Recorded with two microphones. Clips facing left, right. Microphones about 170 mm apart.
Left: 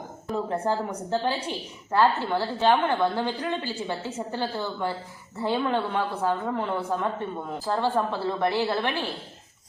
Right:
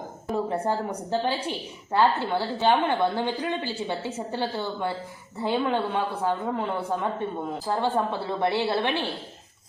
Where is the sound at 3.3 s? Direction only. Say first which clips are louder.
Right 1 dB; 20° right (ahead or behind).